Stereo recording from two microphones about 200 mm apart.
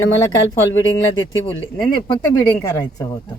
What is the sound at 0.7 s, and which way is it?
Speech, 75° left (ahead or behind).